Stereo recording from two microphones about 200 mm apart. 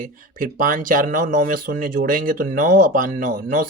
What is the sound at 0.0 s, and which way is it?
Speech, 45° right (ahead or behind).